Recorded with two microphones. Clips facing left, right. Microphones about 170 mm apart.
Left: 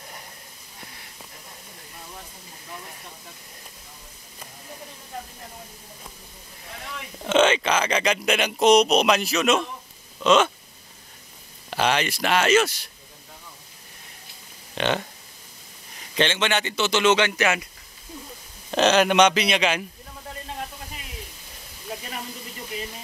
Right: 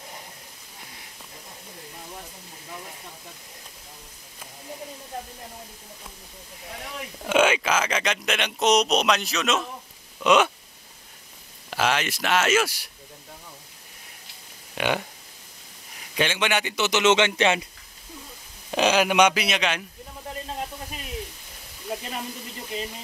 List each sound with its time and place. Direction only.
7.2 s speech: 10° right (ahead or behind)
10.2 s a man's voice: 15° right (ahead or behind)
11.7 s speech: centre (ahead or behind)
14.8 s a man's voice: 10° right (ahead or behind)
16.2 s a man's voice: 10° right (ahead or behind); by 17.6 s 25° right (ahead or behind)
18.7 s a man's voice: 10° right (ahead or behind)